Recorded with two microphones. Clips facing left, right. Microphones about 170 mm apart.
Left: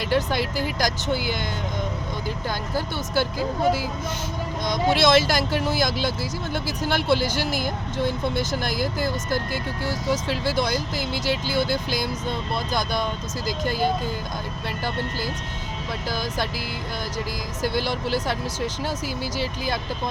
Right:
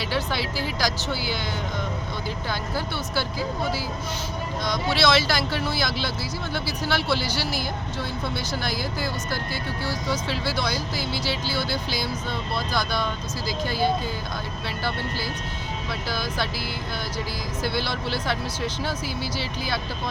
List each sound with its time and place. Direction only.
0.0 s speech: 50° left (ahead or behind)
2.7 s speech: 50° left (ahead or behind)
4.9 s speech: 45° left (ahead or behind)
12.7 s speech: 20° left (ahead or behind)
13.7 s speech: 45° left (ahead or behind)
19.0 s speech: 45° left (ahead or behind)